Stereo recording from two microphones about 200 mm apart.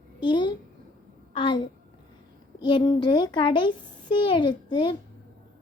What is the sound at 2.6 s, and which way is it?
A child's voice, 25° left (ahead or behind).